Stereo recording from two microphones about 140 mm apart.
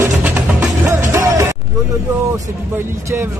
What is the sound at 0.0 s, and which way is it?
Music, 15° right (ahead or behind).